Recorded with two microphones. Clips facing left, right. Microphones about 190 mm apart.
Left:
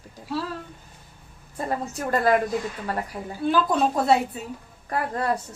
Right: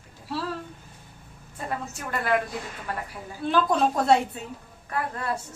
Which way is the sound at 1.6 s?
35° left (ahead or behind).